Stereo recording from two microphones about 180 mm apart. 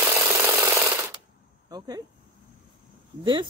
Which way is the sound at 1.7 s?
20° right (ahead or behind).